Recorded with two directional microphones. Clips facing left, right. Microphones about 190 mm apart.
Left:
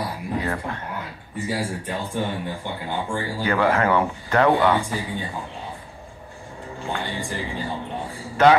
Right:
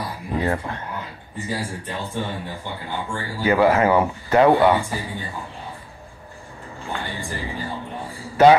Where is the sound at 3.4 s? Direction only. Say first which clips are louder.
Right 4 dB; 10° right (ahead or behind).